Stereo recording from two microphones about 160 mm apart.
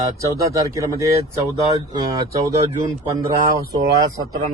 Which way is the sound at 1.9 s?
25° right (ahead or behind).